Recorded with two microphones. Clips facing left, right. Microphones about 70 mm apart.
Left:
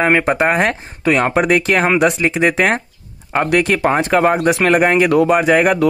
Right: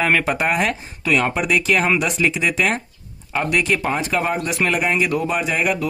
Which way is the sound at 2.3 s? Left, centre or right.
Left.